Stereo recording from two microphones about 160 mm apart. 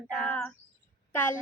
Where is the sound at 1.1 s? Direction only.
15° left (ahead or behind).